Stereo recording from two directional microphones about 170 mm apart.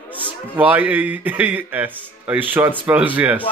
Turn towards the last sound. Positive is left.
turn(degrees=-10)  # may be behind; listen again after turning